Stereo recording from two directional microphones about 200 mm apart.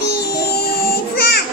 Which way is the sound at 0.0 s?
55° left (ahead or behind).